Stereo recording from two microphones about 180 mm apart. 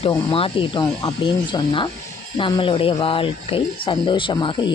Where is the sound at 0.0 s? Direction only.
30° left (ahead or behind).